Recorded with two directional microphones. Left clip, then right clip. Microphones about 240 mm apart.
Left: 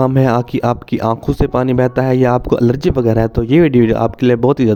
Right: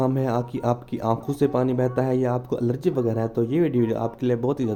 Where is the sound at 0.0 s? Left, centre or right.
Left.